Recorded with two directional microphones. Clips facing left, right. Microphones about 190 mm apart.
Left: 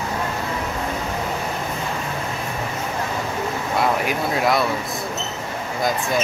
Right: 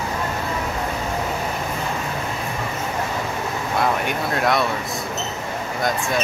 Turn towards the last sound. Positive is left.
turn(degrees=0)  # may be behind; listen again after turning